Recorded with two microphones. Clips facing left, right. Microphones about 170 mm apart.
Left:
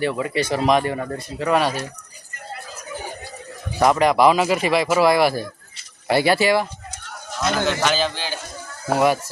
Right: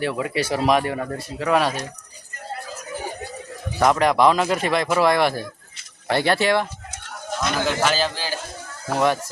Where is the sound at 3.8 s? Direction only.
Centre (ahead or behind).